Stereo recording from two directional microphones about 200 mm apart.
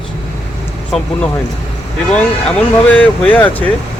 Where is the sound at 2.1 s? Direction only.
5° left (ahead or behind).